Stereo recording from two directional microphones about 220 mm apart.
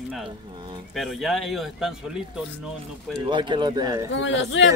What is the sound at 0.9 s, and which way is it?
Speech, centre (ahead or behind).